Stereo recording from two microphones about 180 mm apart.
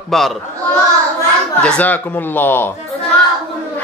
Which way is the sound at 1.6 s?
5° left (ahead or behind).